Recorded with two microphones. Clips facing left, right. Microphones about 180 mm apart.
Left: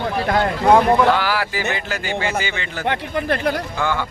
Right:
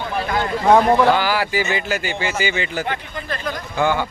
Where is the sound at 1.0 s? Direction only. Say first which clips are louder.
Right 1 dB; centre (ahead or behind).